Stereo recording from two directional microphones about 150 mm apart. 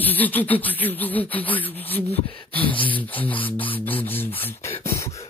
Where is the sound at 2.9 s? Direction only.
10° left (ahead or behind).